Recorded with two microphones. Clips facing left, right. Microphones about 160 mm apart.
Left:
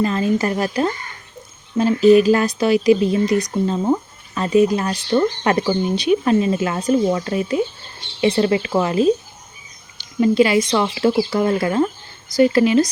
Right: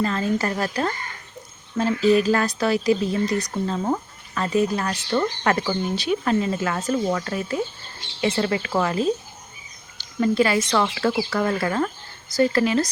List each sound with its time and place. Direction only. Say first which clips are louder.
0.0 s speech: left 4 dB; 15° left (ahead or behind)